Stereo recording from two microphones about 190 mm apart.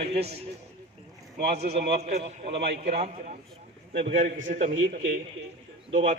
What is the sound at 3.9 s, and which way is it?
Speech, 70° right (ahead or behind).